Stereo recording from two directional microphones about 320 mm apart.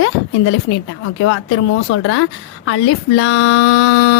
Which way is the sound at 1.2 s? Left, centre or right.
Left.